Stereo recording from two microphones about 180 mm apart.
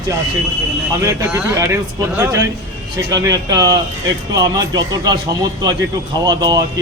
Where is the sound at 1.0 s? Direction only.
15° right (ahead or behind).